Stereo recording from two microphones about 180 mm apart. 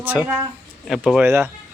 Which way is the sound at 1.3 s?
15° right (ahead or behind).